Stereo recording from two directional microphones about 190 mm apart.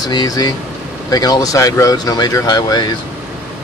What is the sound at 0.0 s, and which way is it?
Speech, 20° left (ahead or behind).